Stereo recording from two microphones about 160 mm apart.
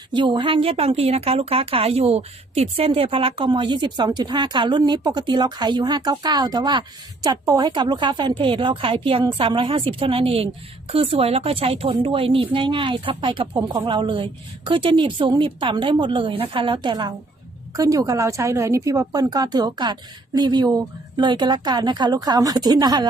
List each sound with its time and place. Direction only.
0.1 s a woman's voice: 30° right (ahead or behind)